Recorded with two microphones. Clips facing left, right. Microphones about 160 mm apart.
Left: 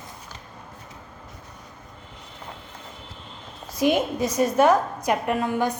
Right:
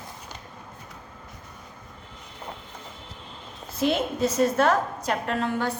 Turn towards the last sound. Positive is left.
turn(degrees=15)  # may be behind; listen again after turning